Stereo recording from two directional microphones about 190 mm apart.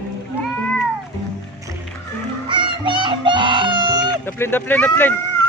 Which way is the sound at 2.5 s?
25° right (ahead or behind).